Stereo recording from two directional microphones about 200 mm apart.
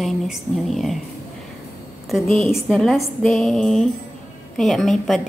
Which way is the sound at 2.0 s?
Centre (ahead or behind).